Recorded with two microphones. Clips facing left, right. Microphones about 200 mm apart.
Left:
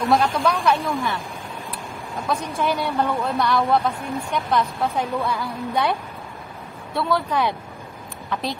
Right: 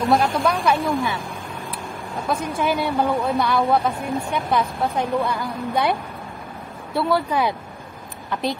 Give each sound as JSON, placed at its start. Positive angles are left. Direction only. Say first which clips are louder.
{"t": 0.1, "sound": "a woman's voice", "louder": "even", "side_deg": 0}
{"t": 7.0, "sound": "a woman's voice", "louder": "right 2 dB", "side_deg": -5}